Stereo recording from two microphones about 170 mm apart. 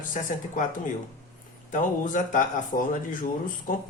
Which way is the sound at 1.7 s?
50° left (ahead or behind).